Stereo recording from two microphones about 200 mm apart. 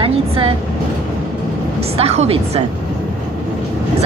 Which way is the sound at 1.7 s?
30° right (ahead or behind).